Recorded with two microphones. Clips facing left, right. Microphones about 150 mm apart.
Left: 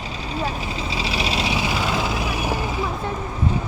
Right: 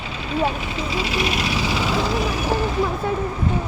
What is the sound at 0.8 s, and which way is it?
Vehicle, 30° left (ahead or behind).